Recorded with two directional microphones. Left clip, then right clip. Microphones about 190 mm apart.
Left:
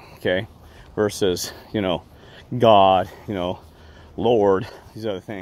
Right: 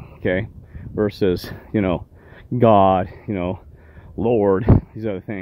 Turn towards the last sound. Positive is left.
turn(degrees=-45)  # may be behind; listen again after turning